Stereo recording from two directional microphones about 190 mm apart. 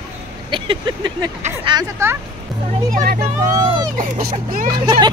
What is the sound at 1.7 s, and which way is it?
Speech, 15° right (ahead or behind).